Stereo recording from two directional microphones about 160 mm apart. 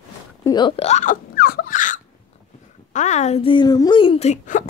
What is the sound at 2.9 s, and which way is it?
Speech, 45° left (ahead or behind).